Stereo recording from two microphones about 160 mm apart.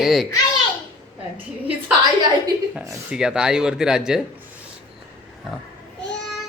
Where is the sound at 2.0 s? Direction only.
25° right (ahead or behind).